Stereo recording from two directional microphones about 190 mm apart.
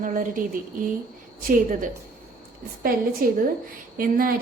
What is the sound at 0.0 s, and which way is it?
Speech, 45° right (ahead or behind).